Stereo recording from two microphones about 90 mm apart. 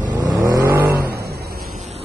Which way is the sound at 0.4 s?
35° right (ahead or behind).